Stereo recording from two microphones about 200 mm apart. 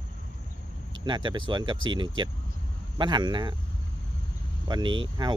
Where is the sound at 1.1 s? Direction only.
25° right (ahead or behind).